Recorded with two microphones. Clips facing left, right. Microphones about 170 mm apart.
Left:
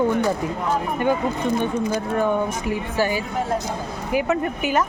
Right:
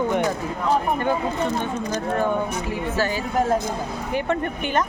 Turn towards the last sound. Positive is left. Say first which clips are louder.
# left 2 dB
turn(degrees=5)  # may be behind; listen again after turning